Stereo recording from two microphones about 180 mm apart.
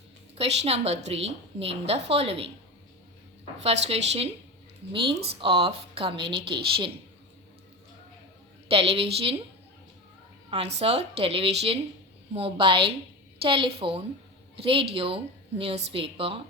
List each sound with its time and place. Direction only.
0.3 s a woman's voice: 35° right (ahead or behind)
3.6 s a woman's voice: 35° right (ahead or behind)
8.7 s a woman's voice: 30° right (ahead or behind)
10.5 s a woman's voice: 35° right (ahead or behind)